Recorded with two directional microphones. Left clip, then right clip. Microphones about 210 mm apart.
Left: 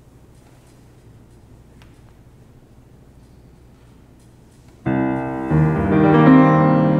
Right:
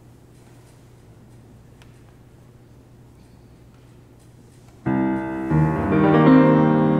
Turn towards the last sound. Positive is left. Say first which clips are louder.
# left 2 dB
turn(degrees=20)  # may be behind; listen again after turning